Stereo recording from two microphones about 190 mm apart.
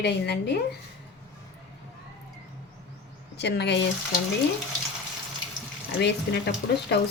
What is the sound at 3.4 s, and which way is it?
Speech, 60° left (ahead or behind).